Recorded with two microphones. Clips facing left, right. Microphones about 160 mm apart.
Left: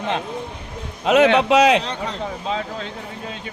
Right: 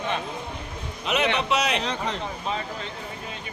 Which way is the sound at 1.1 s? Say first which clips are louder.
Left 10 dB; 90° left.